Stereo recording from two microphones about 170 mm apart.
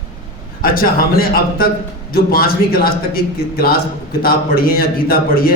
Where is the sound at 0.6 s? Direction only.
60° left (ahead or behind).